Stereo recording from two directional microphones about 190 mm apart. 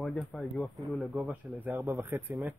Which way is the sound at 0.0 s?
Centre (ahead or behind).